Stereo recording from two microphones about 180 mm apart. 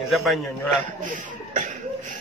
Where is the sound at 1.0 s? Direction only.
45° right (ahead or behind).